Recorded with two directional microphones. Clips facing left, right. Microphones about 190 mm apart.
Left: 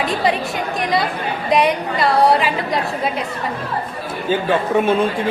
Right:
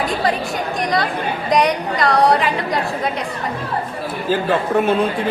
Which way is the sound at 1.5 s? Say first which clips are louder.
Left 1 dB; 5° left (ahead or behind).